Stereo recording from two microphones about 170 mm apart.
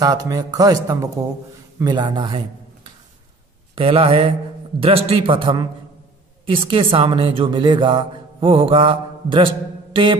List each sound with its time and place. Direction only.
0.0 s a woman's voice: 20° right (ahead or behind)
3.7 s a man's voice: 35° right (ahead or behind)